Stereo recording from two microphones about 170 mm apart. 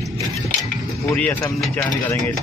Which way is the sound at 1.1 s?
15° left (ahead or behind).